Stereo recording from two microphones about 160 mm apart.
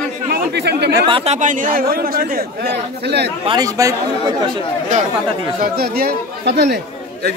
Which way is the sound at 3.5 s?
20° right (ahead or behind).